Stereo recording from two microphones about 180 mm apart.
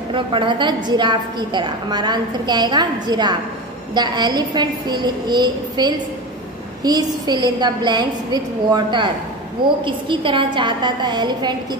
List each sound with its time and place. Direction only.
0.1 s a woman's voice: 30° right (ahead or behind)